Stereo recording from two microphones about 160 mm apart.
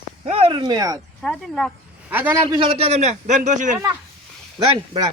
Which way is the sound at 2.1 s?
10° right (ahead or behind).